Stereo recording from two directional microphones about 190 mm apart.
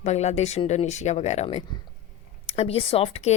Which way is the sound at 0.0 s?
35° left (ahead or behind).